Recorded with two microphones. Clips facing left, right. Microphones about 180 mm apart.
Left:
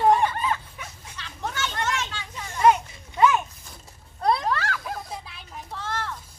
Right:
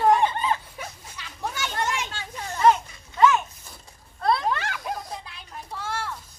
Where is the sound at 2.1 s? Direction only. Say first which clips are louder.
Right 1 dB; 40° right (ahead or behind).